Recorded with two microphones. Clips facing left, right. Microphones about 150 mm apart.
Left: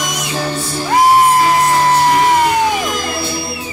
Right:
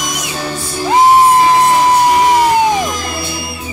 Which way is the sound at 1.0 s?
25° right (ahead or behind).